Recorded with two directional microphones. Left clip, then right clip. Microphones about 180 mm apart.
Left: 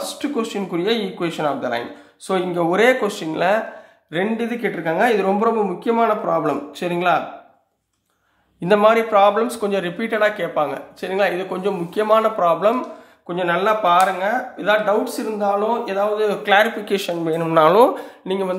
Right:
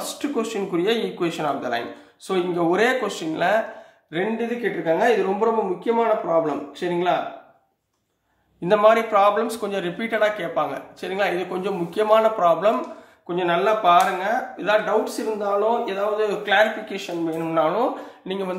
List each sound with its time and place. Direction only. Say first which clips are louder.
0.0 s speech: left 2 dB; 20° left (ahead or behind)
4.1 s speech: left 2 dB; 40° left (ahead or behind)
5.9 s speech: left 3 dB; 50° left (ahead or behind)
8.6 s speech: left 2 dB; 30° left (ahead or behind)
16.9 s speech: left 6 dB; 65° left (ahead or behind)
18.2 s speech: left 5 dB; 20° left (ahead or behind)